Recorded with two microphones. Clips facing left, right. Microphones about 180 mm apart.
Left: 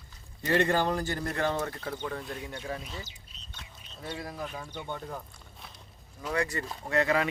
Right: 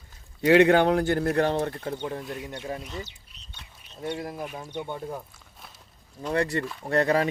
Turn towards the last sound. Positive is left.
turn(degrees=-35)  # may be behind; listen again after turning